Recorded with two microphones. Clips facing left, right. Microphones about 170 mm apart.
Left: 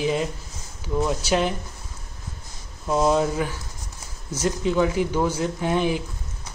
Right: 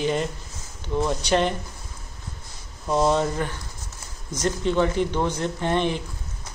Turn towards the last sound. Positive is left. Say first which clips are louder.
# left 1 dB
turn(degrees=5)  # may be behind; listen again after turning